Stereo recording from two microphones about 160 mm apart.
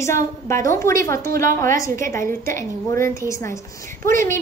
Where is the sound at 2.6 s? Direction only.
15° left (ahead or behind).